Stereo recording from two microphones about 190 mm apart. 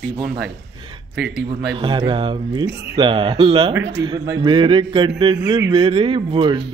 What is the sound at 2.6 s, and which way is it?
Speech, 60° right (ahead or behind).